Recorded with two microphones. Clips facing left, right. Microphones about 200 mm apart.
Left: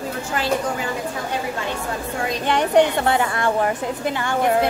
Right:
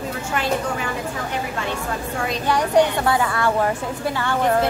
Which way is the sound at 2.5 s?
25° left (ahead or behind).